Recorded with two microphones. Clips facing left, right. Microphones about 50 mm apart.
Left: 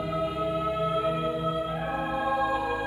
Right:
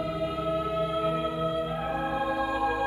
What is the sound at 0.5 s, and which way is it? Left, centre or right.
Music, centre.